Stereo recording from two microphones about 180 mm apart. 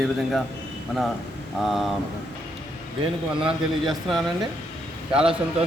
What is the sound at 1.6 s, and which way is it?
Speech, centre (ahead or behind).